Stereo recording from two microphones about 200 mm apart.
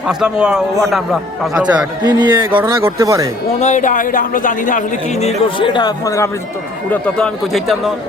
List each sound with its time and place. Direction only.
0.1 s a man's voice: 5° right (ahead or behind)
2.0 s speech: 20° right (ahead or behind)
3.6 s speech: 40° left (ahead or behind); by 6.3 s 15° left (ahead or behind)
6.9 s a man's voice: centre (ahead or behind)